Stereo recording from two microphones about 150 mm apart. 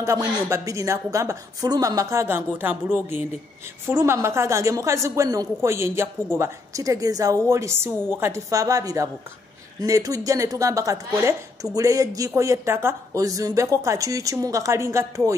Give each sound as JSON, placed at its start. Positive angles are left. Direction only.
{"t": 0.0, "sound": "a woman's voice", "side_deg": -20}